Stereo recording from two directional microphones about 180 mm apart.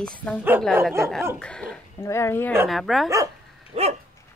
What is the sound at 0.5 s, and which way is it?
Speech, 10° right (ahead or behind).